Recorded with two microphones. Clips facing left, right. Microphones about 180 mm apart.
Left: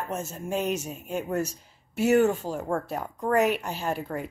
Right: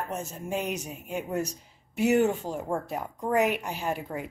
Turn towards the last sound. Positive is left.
turn(degrees=-15)  # may be behind; listen again after turning